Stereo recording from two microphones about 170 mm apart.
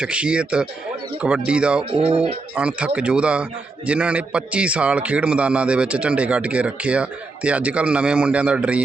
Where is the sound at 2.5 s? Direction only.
5° right (ahead or behind).